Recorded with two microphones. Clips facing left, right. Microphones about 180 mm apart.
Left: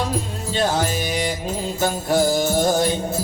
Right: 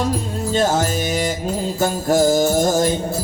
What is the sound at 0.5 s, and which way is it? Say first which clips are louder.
Music: right 3 dB; 45° right (ahead or behind).